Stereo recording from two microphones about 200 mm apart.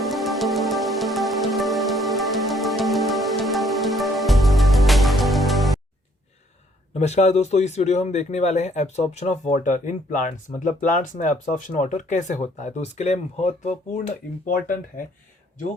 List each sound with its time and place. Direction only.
0.0 s music: centre (ahead or behind)
6.9 s a man's voice: 35° left (ahead or behind)